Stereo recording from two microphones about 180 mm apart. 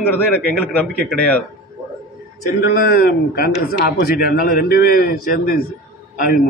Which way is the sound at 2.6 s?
55° left (ahead or behind).